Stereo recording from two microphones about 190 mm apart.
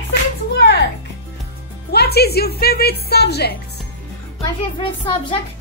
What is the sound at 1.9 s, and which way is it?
A woman's voice, 55° left (ahead or behind).